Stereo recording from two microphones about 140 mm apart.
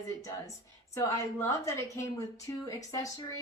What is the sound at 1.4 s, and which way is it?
A woman's voice, 20° left (ahead or behind).